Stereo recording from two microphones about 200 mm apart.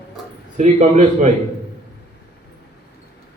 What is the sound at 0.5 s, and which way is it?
Male singing, 40° right (ahead or behind).